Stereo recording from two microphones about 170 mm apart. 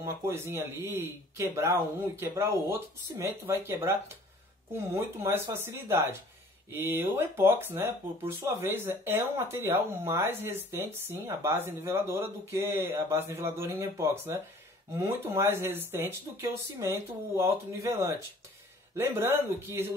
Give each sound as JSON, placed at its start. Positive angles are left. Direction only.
{"t": 0.0, "sound": "speech", "side_deg": -15}